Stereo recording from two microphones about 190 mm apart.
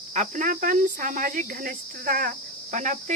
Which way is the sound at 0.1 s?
40° right (ahead or behind).